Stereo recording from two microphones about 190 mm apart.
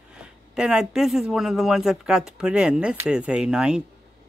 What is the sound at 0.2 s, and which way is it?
Speech, 5° right (ahead or behind).